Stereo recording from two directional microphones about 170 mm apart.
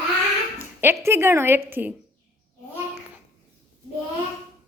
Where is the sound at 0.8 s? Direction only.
15° right (ahead or behind).